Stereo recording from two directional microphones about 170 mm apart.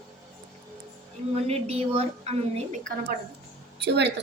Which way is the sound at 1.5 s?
35° right (ahead or behind).